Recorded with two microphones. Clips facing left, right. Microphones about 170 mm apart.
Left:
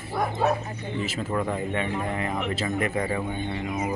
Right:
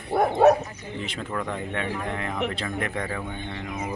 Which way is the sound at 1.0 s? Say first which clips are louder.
Left 3 dB; 5° left (ahead or behind).